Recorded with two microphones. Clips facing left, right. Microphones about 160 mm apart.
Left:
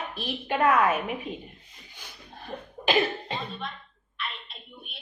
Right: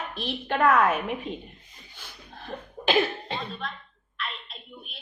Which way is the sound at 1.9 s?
15° left (ahead or behind).